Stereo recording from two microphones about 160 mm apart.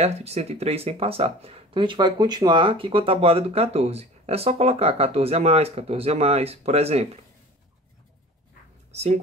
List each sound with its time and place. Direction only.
0.0 s speech: 40° right (ahead or behind)
8.9 s speech: 40° right (ahead or behind)